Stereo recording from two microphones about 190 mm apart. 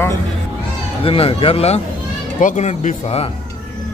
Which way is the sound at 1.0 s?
30° left (ahead or behind).